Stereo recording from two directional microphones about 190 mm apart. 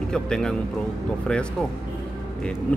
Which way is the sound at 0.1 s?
5° left (ahead or behind).